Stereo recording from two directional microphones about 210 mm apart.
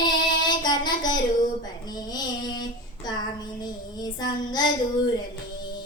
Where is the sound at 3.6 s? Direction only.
20° left (ahead or behind).